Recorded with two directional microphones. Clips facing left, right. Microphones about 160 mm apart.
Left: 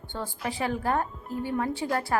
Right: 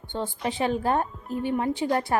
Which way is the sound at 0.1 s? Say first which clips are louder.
Right 4 dB; 20° right (ahead or behind).